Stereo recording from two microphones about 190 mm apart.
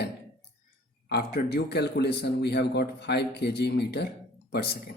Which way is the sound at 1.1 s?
60° left (ahead or behind).